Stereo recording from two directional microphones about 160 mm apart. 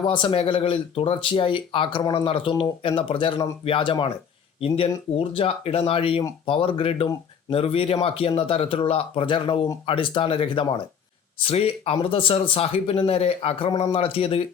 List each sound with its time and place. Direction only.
0.0 s speech: 30° left (ahead or behind)